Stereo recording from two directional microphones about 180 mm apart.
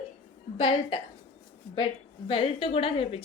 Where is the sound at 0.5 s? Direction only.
30° left (ahead or behind).